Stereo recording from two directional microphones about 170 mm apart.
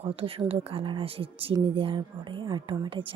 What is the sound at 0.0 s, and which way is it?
Speech, 30° right (ahead or behind).